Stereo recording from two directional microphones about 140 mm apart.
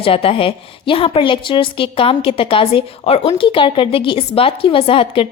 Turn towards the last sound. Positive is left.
turn(degrees=40)  # may be behind; listen again after turning